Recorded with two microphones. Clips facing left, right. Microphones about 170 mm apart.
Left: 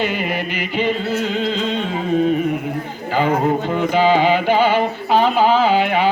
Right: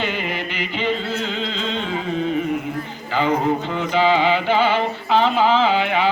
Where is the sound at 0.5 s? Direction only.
45° left (ahead or behind).